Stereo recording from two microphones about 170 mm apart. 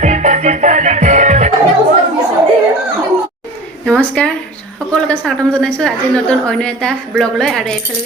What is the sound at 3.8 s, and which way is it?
A woman's voice, 5° left (ahead or behind).